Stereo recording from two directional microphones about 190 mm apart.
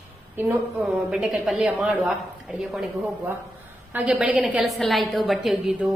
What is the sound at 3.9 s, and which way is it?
A woman's voice, 5° right (ahead or behind).